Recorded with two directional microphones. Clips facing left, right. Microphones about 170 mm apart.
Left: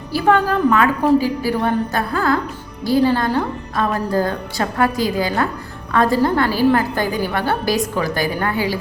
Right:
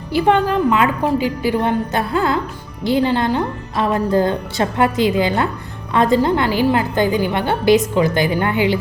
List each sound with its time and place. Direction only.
0.1 s speech: 20° right (ahead or behind)